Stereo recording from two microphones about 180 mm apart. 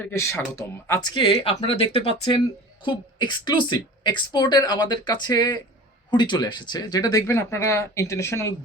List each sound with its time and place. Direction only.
0.0 s a woman's voice: 15° left (ahead or behind)